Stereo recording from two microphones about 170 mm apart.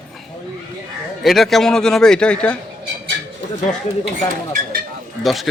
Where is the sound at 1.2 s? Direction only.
Centre (ahead or behind).